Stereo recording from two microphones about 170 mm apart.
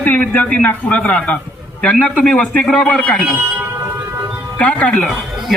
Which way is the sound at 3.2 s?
10° right (ahead or behind).